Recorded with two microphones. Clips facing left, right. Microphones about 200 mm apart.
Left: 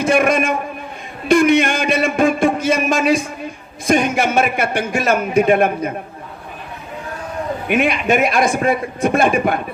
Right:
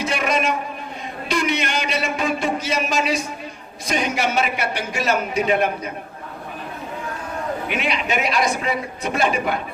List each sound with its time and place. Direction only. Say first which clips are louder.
0.0 s a sound: left 7 dB; 50° left (ahead or behind)
3.8 s a man's voice: left 6 dB; 50° left (ahead or behind)
7.7 s a man's voice: left 10 dB; 50° left (ahead or behind)